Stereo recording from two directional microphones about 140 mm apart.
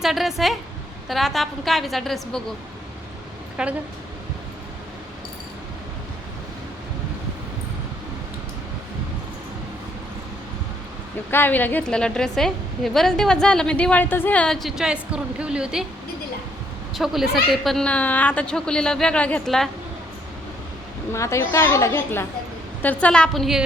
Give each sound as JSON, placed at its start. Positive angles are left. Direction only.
{"t": 0.0, "sound": "a woman's voice", "side_deg": 0}
{"t": 3.6, "sound": "a woman's voice", "side_deg": -5}
{"t": 11.3, "sound": "a woman's voice", "side_deg": 15}
{"t": 16.9, "sound": "a woman's voice", "side_deg": 0}
{"t": 21.1, "sound": "a woman's voice", "side_deg": 20}